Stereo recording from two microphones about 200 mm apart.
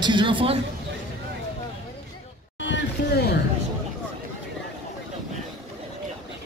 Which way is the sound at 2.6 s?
60° left (ahead or behind).